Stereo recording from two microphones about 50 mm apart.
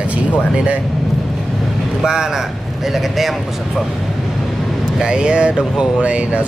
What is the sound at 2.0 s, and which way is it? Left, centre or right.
Speech, centre.